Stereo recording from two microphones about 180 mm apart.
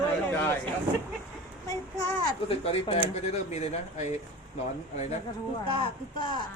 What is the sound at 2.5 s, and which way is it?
Speech, 35° left (ahead or behind).